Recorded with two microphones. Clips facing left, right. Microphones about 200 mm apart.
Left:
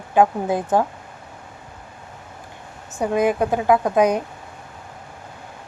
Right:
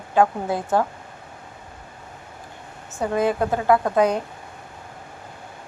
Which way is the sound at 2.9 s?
15° left (ahead or behind).